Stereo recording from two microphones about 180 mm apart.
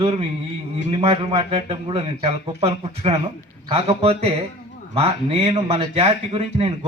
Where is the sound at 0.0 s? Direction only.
35° right (ahead or behind).